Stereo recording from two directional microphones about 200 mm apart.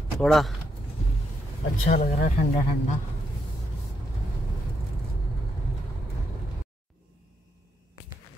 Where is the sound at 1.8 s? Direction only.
45° left (ahead or behind).